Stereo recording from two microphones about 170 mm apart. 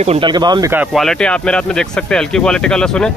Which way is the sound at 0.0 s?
40° right (ahead or behind).